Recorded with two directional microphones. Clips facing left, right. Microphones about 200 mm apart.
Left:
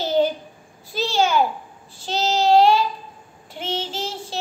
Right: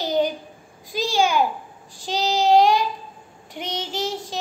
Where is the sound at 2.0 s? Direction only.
15° right (ahead or behind).